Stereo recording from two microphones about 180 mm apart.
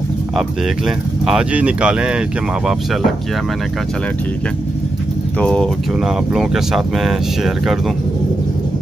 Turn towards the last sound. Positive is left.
turn(degrees=0)  # may be behind; listen again after turning